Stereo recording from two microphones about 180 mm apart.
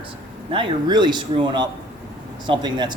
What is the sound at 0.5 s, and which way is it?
Speech, 25° right (ahead or behind).